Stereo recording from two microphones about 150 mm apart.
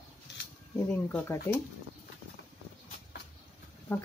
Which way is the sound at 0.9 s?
15° left (ahead or behind).